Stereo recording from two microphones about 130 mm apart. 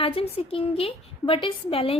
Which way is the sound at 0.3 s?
45° left (ahead or behind).